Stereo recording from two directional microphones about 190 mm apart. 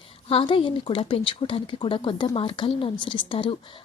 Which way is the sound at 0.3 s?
30° left (ahead or behind).